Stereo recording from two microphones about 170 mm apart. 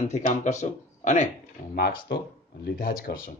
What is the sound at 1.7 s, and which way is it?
Speech, 70° left (ahead or behind).